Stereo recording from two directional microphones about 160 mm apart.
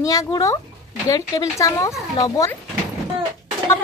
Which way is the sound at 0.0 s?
20° left (ahead or behind).